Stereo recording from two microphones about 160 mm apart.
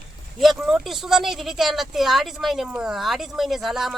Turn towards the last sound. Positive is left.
turn(degrees=0)  # may be behind; listen again after turning